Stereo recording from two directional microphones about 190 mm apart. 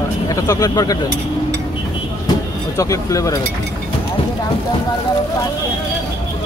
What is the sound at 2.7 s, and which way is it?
Speech, 15° left (ahead or behind).